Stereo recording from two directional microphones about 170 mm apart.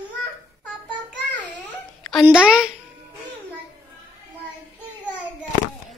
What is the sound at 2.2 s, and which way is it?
Speech, 5° right (ahead or behind).